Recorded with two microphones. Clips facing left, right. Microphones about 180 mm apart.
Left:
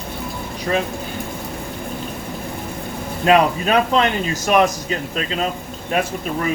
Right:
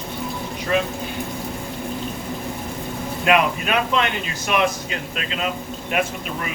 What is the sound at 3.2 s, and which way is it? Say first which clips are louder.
A man's voice: left 4 dB; 35° left (ahead or behind).